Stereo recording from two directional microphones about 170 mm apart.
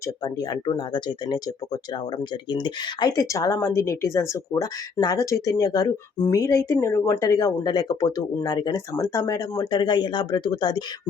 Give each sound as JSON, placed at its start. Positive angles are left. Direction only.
{"t": 0.2, "sound": "speech", "side_deg": 20}